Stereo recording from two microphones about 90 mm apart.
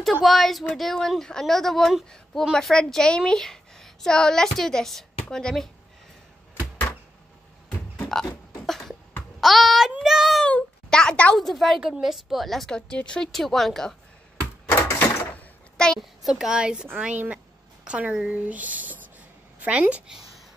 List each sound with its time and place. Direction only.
0.0 s a woman's voice: centre (ahead or behind)
8.1 s beatboxing: 5° left (ahead or behind)
9.4 s child singing: centre (ahead or behind)
10.4 s a sound: 10° left (ahead or behind)
11.3 s a woman's voice: centre (ahead or behind)
15.8 s a child's voice: 5° left (ahead or behind)